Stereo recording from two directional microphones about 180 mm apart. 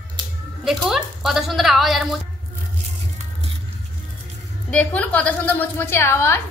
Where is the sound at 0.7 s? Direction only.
Centre (ahead or behind).